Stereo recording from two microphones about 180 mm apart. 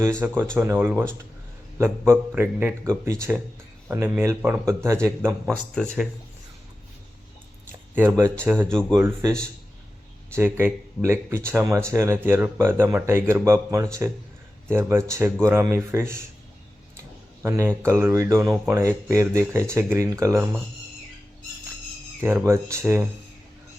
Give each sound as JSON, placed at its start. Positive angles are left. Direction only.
{"t": 0.5, "sound": "a man's voice", "side_deg": -15}
{"t": 5.5, "sound": "speech", "side_deg": 5}
{"t": 7.9, "sound": "a man's voice", "side_deg": -10}
{"t": 8.7, "sound": "speech", "side_deg": 5}
{"t": 9.2, "sound": "a man's voice", "side_deg": -20}
{"t": 17.4, "sound": "a man's voice", "side_deg": -15}
{"t": 22.2, "sound": "a man's voice", "side_deg": -10}